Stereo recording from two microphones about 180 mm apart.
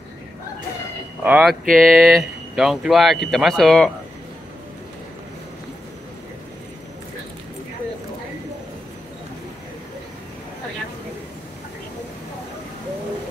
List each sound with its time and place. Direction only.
1.2 s speech: 10° right (ahead or behind)